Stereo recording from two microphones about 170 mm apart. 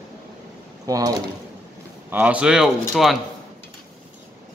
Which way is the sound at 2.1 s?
10° right (ahead or behind).